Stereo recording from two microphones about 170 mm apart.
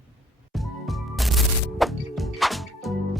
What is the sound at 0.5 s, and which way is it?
Music, centre (ahead or behind).